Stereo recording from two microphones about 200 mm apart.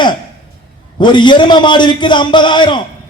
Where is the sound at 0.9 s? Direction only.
25° left (ahead or behind).